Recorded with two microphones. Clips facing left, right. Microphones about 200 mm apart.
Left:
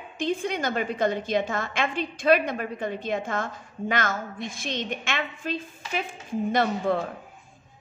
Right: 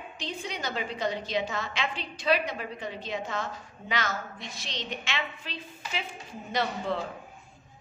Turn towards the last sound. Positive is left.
turn(degrees=50)  # may be behind; listen again after turning